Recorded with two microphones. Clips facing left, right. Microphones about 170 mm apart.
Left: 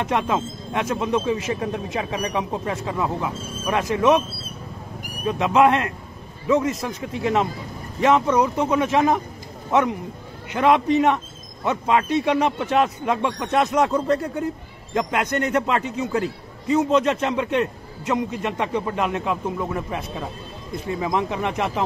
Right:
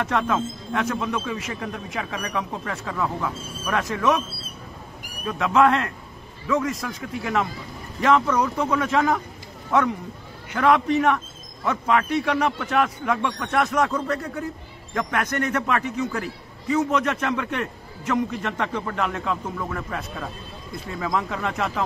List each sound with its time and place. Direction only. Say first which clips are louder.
0.0 s speech: left 1 dB; 20° left (ahead or behind)
5.2 s speech: left 2 dB; 20° left (ahead or behind)